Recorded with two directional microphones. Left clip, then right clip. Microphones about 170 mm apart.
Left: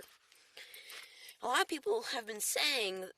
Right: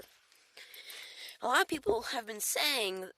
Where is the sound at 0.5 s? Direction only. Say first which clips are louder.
Right 1 dB; 10° right (ahead or behind).